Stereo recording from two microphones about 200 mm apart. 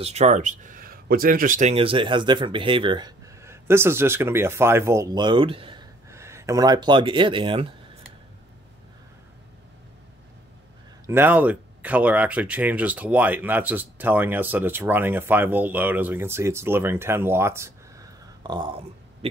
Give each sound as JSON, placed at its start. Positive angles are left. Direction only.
{"t": 0.0, "sound": "speech", "side_deg": -35}
{"t": 6.0, "sound": "speech", "side_deg": -15}
{"t": 11.1, "sound": "speech", "side_deg": -10}